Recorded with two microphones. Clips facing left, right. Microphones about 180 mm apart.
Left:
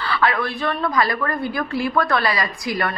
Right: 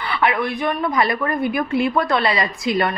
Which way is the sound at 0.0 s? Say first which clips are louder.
Right 1 dB; 20° right (ahead or behind).